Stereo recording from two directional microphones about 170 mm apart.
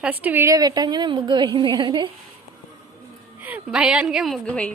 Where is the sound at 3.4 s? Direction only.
5° right (ahead or behind).